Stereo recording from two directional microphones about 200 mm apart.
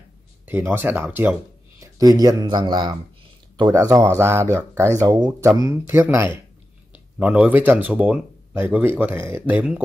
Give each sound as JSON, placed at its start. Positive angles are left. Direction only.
{"t": 0.5, "sound": "speech", "side_deg": -10}